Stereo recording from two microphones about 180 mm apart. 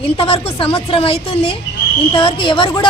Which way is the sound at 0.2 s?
30° left (ahead or behind).